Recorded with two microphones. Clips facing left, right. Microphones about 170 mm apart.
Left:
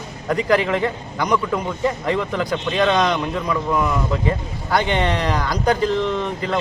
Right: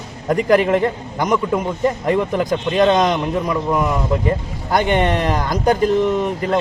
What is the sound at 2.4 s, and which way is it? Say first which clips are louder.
Speech: right 4 dB; 45° right (ahead or behind).